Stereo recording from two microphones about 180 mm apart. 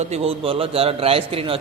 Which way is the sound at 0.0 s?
35° right (ahead or behind).